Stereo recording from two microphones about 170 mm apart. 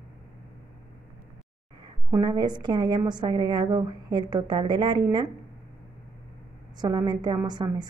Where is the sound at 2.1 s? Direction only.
25° right (ahead or behind).